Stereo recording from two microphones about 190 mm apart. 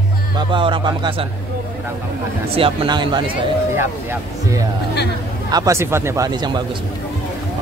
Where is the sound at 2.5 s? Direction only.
30° right (ahead or behind).